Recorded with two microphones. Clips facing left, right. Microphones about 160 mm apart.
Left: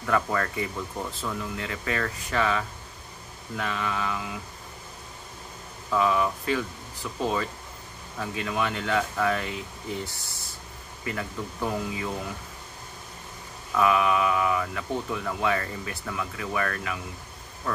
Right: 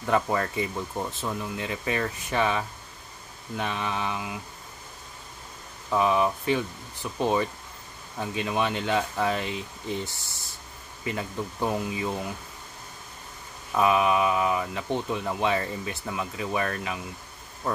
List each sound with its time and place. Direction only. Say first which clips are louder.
0.0 s speech: right 1 dB; 20° right (ahead or behind)
5.9 s speech: right 1 dB; 20° right (ahead or behind)
13.7 s speech: right 1 dB; 20° right (ahead or behind)